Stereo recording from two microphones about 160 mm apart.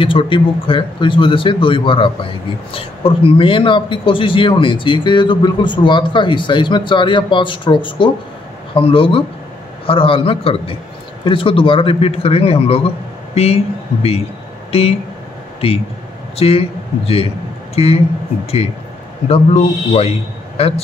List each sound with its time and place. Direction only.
0.0 s a man's voice: 30° left (ahead or behind)
14.7 s speech: 40° left (ahead or behind)
16.3 s a man's voice: 40° left (ahead or behind)
19.2 s a man's voice: 40° left (ahead or behind)